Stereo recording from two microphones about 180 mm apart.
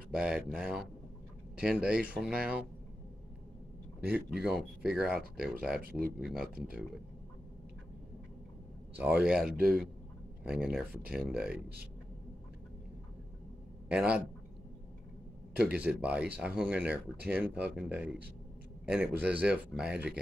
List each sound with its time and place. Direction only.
0.1 s speech: 5° right (ahead or behind)
4.0 s speech: 5° right (ahead or behind)
5.8 s speech: 55° right (ahead or behind)
6.1 s speech: 5° right (ahead or behind)
8.9 s speech: 5° right (ahead or behind)
13.8 s speech: 5° right (ahead or behind)
15.5 s speech: 5° right (ahead or behind)